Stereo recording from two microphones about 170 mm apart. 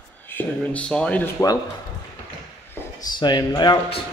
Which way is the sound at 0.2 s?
10° left (ahead or behind).